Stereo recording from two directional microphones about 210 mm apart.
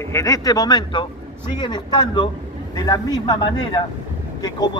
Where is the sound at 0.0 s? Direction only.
15° left (ahead or behind).